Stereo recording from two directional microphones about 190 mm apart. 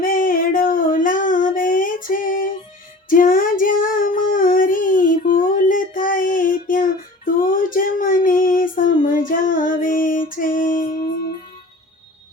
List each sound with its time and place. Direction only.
0.0 s child singing: 45° left (ahead or behind)